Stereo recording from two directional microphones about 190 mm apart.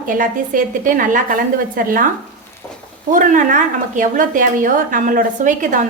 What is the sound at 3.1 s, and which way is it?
A woman's voice, 45° right (ahead or behind).